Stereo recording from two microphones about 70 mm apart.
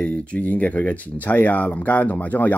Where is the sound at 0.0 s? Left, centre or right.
Centre.